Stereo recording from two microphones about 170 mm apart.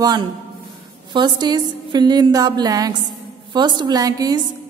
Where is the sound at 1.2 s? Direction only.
25° right (ahead or behind).